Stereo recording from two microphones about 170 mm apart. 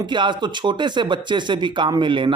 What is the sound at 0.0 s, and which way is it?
Speech, 25° right (ahead or behind).